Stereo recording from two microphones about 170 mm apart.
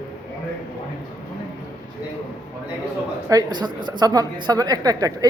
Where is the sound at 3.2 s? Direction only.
25° right (ahead or behind).